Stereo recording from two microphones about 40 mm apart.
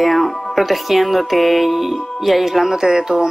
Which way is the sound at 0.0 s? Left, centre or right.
Centre.